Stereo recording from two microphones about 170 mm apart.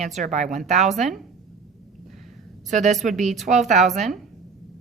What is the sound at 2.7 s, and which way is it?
Speech, 45° right (ahead or behind).